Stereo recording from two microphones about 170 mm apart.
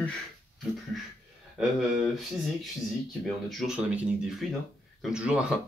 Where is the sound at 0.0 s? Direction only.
5° left (ahead or behind).